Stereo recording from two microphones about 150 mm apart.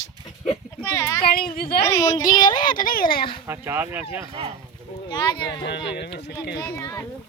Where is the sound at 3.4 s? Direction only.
15° right (ahead or behind).